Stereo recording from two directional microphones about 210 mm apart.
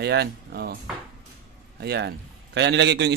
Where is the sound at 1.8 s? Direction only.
55° right (ahead or behind).